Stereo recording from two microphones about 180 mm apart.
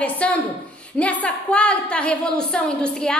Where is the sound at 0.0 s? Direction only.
5° left (ahead or behind).